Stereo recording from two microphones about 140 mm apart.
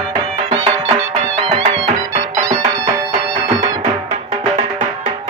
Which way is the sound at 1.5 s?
45° right (ahead or behind).